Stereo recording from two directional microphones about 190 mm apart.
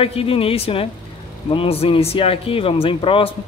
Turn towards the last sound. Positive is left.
turn(degrees=30)  # may be behind; listen again after turning